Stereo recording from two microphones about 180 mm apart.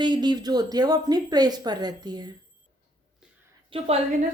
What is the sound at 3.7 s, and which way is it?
Speech, 35° right (ahead or behind).